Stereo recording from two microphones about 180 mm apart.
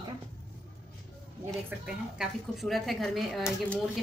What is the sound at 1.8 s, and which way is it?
A woman's voice, centre (ahead or behind).